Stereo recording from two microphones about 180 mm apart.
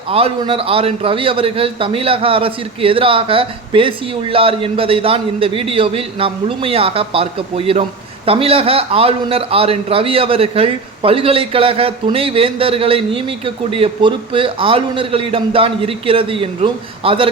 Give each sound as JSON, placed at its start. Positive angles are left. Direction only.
{"t": 0.1, "sound": "a man's voice", "side_deg": -30}